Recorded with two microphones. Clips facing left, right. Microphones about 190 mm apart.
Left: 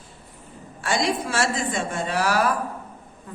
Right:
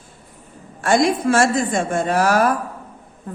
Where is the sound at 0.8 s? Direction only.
50° right (ahead or behind).